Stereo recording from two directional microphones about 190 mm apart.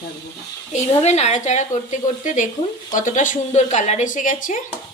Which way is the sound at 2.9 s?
45° left (ahead or behind).